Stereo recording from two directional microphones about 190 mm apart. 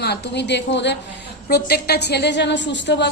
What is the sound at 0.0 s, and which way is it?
A woman's voice, 60° left (ahead or behind).